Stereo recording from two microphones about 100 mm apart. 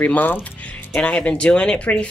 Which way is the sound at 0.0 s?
15° left (ahead or behind).